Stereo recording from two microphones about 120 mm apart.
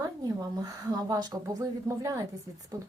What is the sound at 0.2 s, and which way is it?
A woman's voice, 30° right (ahead or behind).